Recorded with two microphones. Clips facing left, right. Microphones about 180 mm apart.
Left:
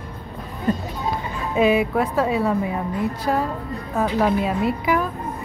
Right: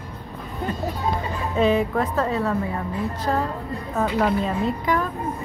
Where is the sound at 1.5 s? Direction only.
10° left (ahead or behind).